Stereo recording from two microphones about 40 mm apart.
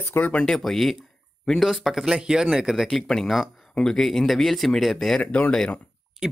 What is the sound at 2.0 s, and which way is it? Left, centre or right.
Speech, centre.